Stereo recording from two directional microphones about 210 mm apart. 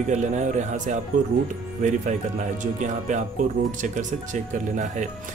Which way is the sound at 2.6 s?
35° right (ahead or behind).